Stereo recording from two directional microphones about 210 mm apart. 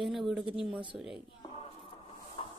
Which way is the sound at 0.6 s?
5° right (ahead or behind).